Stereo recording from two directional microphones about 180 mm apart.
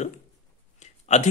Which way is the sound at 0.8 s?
40° left (ahead or behind).